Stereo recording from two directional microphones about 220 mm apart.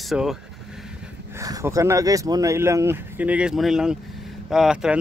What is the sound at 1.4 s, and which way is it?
Speech, 15° right (ahead or behind).